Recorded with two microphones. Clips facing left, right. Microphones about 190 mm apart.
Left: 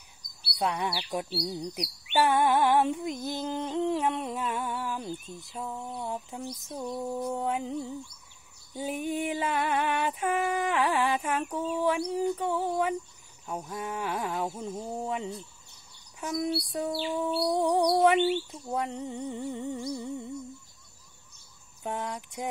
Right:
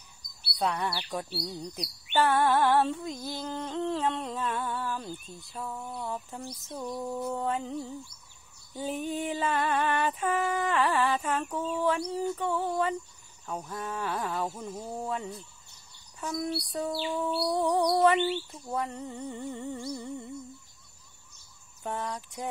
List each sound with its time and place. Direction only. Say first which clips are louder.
0.2 s bird: even; 55° right (ahead or behind)
0.6 s speech: even; 10° left (ahead or behind)
0.8 s humming: left 1 dB; 20° left (ahead or behind)
18.2 s speech: left 3 dB; centre (ahead or behind)
18.7 s humming: left 1 dB; 15° left (ahead or behind)
21.8 s humming: left 1 dB; 15° left (ahead or behind)